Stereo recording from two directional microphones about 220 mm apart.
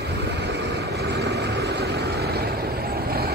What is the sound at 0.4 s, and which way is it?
Vehicle, 50° right (ahead or behind).